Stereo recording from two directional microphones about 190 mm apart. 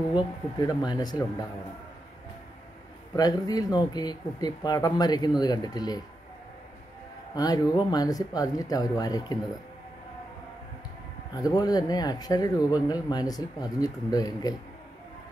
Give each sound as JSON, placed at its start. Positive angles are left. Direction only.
{"t": 0.1, "sound": "speech", "side_deg": 20}
{"t": 3.2, "sound": "speech", "side_deg": 20}
{"t": 7.3, "sound": "speech", "side_deg": 20}
{"t": 11.3, "sound": "speech", "side_deg": 20}